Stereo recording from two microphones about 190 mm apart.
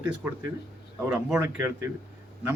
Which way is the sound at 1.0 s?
10° right (ahead or behind).